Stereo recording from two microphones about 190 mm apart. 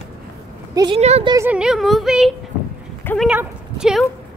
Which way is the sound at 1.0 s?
35° right (ahead or behind).